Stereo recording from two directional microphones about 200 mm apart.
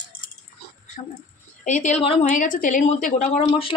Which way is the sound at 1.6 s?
35° left (ahead or behind).